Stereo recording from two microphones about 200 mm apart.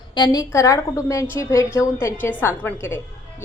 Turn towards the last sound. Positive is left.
turn(degrees=10)  # may be behind; listen again after turning